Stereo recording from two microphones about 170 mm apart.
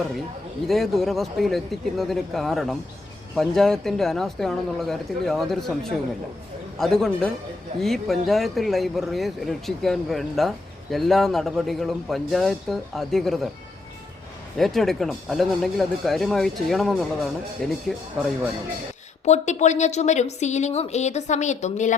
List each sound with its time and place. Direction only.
0.7 s speech: centre (ahead or behind)
14.6 s speech: centre (ahead or behind)
19.2 s a woman's voice: 40° left (ahead or behind)